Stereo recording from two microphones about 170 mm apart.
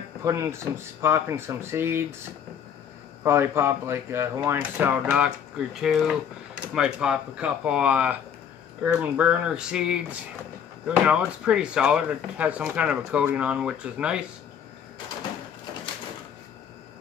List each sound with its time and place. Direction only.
0.2 s speech: 15° right (ahead or behind)
3.3 s speech: 15° right (ahead or behind)